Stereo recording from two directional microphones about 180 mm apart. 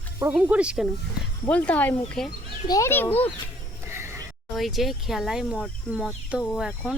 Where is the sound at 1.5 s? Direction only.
5° left (ahead or behind).